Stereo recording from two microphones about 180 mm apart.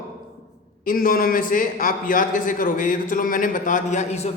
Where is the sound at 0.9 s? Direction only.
50° left (ahead or behind).